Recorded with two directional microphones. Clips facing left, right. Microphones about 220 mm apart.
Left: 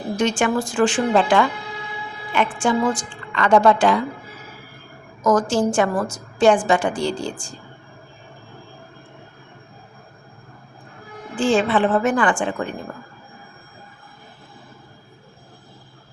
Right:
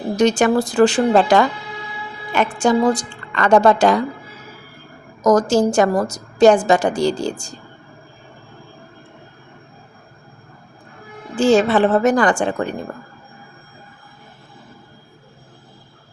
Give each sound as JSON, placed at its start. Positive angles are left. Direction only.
{"t": 0.2, "sound": "a woman's voice", "side_deg": -40}
{"t": 5.2, "sound": "a woman's voice", "side_deg": -40}
{"t": 11.3, "sound": "a woman's voice", "side_deg": -40}